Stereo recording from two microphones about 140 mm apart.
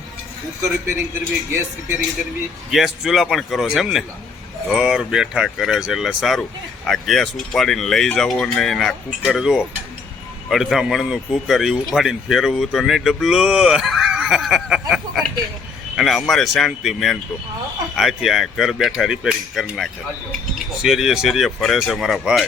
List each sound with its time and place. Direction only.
1.1 s a man's voice: 20° right (ahead or behind)
2.6 s speech: 5° right (ahead or behind)